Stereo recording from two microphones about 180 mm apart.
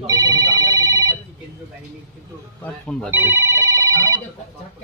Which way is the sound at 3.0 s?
15° right (ahead or behind).